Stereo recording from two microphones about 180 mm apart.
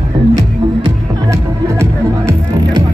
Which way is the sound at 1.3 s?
15° right (ahead or behind).